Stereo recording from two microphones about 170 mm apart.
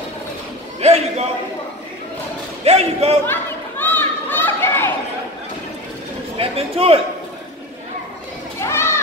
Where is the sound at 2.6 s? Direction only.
40° right (ahead or behind).